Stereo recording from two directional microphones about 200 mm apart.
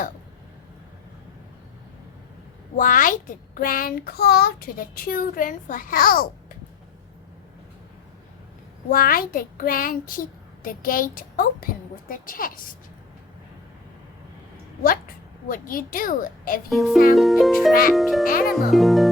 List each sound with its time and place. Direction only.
2.7 s a child's voice: 45° left (ahead or behind)
8.9 s a child's voice: 45° left (ahead or behind)
15.4 s a child's voice: 45° left (ahead or behind)
16.6 s speech: centre (ahead or behind)